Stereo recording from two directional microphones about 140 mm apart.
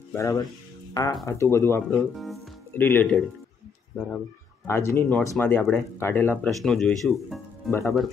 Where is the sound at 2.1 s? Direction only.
Centre (ahead or behind).